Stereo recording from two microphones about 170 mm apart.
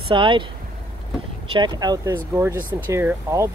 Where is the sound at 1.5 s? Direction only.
25° right (ahead or behind).